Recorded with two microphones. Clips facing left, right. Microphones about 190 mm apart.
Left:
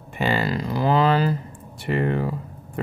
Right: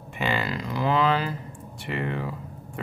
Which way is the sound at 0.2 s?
35° left (ahead or behind).